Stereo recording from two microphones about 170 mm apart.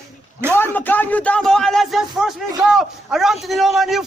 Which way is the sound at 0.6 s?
10° left (ahead or behind).